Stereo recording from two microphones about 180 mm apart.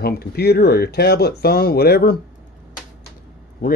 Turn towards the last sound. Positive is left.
turn(degrees=50)  # may be behind; listen again after turning